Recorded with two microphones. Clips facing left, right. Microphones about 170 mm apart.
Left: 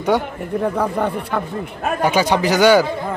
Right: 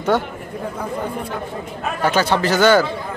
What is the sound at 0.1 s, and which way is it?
Speech, 15° left (ahead or behind).